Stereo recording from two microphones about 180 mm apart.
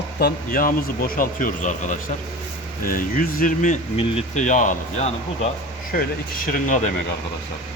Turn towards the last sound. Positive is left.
turn(degrees=45)  # may be behind; listen again after turning